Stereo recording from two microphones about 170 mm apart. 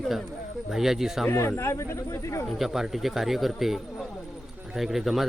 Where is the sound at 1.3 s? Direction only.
15° left (ahead or behind).